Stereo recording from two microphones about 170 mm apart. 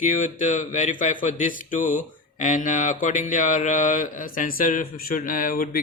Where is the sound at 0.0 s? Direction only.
50° left (ahead or behind).